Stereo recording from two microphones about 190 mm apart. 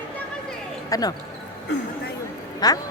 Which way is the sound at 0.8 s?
20° left (ahead or behind).